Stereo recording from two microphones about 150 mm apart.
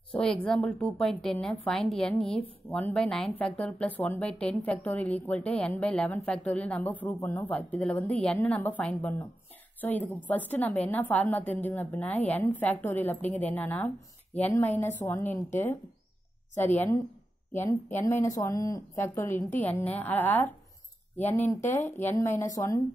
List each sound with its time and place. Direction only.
0.1 s a woman's voice: 5° left (ahead or behind)
10.2 s a woman's voice: 10° left (ahead or behind)
16.5 s a woman's voice: 15° left (ahead or behind)